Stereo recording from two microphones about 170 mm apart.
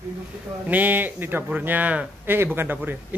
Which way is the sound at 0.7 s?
10° right (ahead or behind).